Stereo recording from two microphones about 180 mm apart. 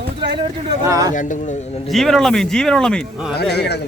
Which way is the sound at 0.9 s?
20° right (ahead or behind).